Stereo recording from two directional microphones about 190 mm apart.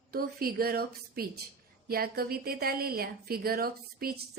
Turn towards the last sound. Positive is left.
turn(degrees=-55)  # may be behind; listen again after turning